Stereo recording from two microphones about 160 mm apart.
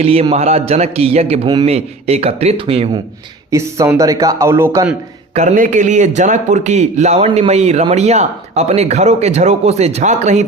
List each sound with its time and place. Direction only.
0.0 s a man's voice: 40° right (ahead or behind)
3.5 s speech: 20° right (ahead or behind)
5.3 s a man's voice: 45° right (ahead or behind)